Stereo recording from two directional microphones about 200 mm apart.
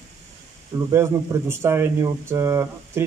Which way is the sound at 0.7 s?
15° right (ahead or behind).